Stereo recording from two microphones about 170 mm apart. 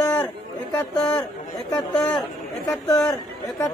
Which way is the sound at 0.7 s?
10° left (ahead or behind).